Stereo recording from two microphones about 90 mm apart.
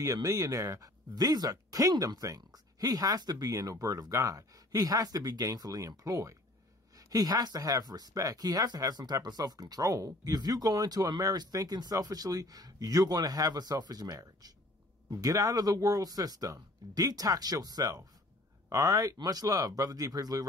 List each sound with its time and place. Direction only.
0.0 s speech: 40° right (ahead or behind)